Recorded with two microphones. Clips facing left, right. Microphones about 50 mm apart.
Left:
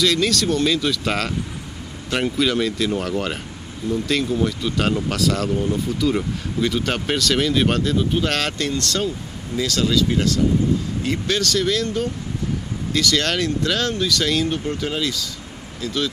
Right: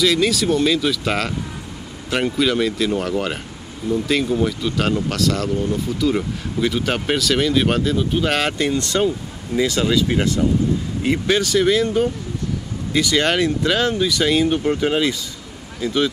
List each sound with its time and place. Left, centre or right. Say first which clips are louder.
0.0 s speech: right 2 dB; centre